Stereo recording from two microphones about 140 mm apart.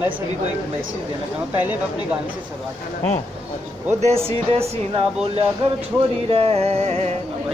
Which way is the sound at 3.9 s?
45° right (ahead or behind).